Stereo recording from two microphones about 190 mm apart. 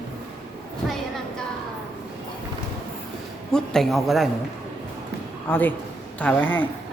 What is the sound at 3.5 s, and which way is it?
Speech, 5° left (ahead or behind).